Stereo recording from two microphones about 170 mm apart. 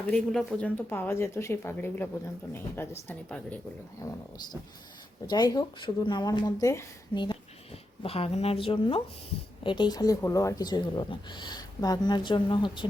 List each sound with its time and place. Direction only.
0.1 s speech: 5° left (ahead or behind)
4.0 s speech: 25° left (ahead or behind)